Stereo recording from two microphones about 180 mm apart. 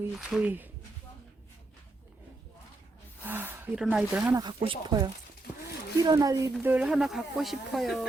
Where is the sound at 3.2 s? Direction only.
10° right (ahead or behind).